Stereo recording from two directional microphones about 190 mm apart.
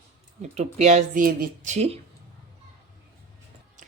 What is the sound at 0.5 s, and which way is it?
Speech, 35° right (ahead or behind).